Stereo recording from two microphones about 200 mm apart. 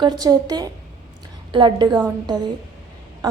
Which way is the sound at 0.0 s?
20° right (ahead or behind).